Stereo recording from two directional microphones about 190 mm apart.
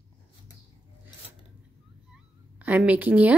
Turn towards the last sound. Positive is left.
turn(degrees=-5)  # may be behind; listen again after turning